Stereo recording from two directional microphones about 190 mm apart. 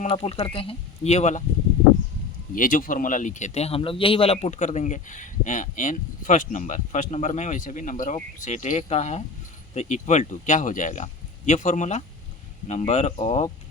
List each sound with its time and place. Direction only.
0.0 s speech: 30° left (ahead or behind)
2.6 s speech: 45° left (ahead or behind)